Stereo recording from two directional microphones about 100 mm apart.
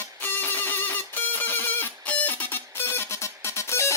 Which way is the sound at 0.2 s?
20° left (ahead or behind).